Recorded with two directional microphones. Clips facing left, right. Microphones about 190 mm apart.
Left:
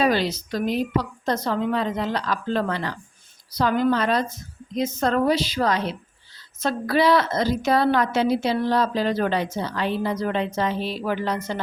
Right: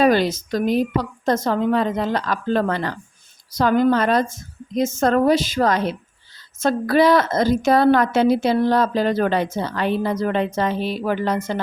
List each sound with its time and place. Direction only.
0.0 s a woman's voice: 50° right (ahead or behind)